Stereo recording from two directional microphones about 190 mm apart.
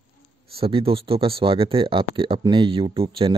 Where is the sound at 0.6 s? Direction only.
30° right (ahead or behind).